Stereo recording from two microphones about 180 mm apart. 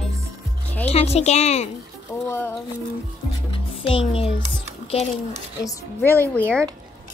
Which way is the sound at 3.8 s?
30° left (ahead or behind).